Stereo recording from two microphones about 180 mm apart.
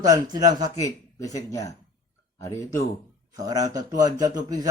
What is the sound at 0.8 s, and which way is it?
A man's voice, 20° left (ahead or behind).